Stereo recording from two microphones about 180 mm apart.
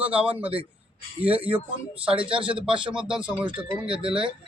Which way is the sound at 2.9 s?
5° right (ahead or behind).